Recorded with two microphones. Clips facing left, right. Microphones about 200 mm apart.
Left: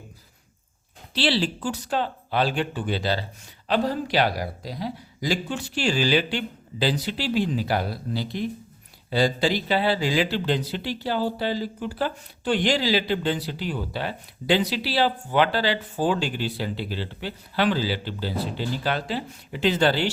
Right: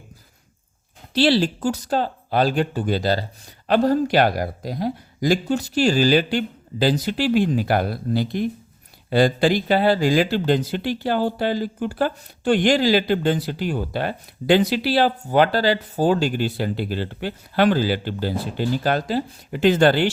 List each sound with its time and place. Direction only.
1.1 s speech: 45° right (ahead or behind)